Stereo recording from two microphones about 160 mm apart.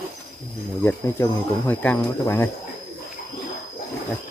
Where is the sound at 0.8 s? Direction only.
15° left (ahead or behind).